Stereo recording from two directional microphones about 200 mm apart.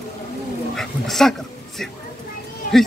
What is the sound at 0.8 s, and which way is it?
Speech, centre (ahead or behind).